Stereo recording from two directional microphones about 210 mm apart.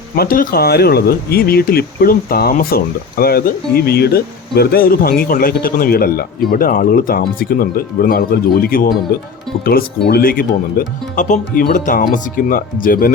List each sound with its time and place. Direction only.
0.2 s speech: 45° left (ahead or behind)